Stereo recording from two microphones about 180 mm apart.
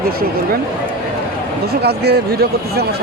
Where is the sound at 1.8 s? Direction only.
60° right (ahead or behind).